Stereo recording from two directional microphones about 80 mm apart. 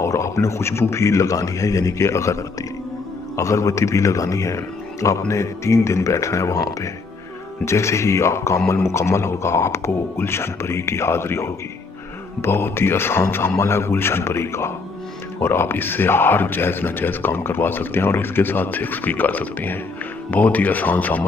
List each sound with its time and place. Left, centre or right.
0.0 s a man's voice: left
3.3 s a man's voice: left